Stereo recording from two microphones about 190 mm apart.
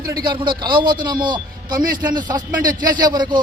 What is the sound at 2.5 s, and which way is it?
Speech, 45° right (ahead or behind).